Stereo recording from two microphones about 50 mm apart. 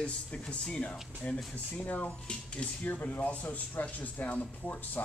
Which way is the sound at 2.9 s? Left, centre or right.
Left.